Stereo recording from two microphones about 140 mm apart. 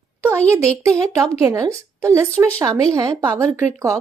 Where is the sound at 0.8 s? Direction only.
20° right (ahead or behind).